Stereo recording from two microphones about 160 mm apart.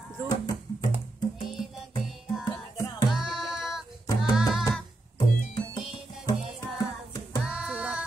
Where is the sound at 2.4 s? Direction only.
25° left (ahead or behind).